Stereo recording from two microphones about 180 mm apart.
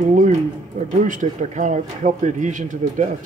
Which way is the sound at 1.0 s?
45° right (ahead or behind).